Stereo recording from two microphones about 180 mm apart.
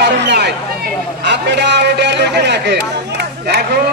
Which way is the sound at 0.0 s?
70° right (ahead or behind).